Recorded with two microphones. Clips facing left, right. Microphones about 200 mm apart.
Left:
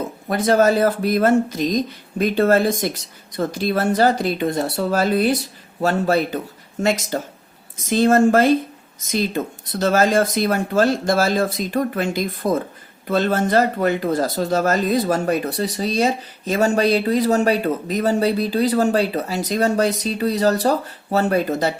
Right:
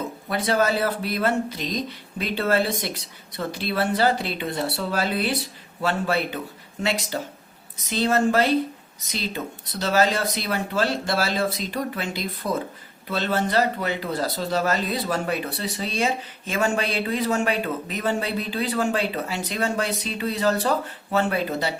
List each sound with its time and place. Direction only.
0.3 s speech: 45° left (ahead or behind)